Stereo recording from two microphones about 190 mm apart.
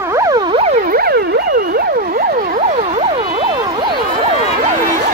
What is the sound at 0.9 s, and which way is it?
Siren, 55° right (ahead or behind).